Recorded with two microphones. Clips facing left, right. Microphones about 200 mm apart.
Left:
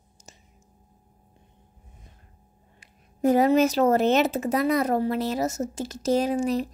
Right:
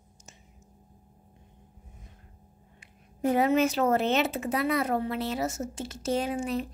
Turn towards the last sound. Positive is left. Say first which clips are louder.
# left 6 dB
turn(degrees=40)  # may be behind; listen again after turning